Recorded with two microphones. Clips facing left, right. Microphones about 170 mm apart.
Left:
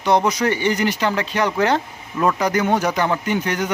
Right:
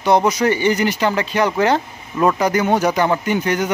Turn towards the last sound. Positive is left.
turn(degrees=-15)  # may be behind; listen again after turning